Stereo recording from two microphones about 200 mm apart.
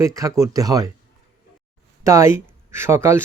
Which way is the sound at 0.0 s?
15° right (ahead or behind).